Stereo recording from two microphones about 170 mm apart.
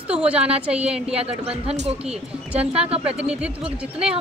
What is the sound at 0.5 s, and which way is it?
Speech, 5° right (ahead or behind).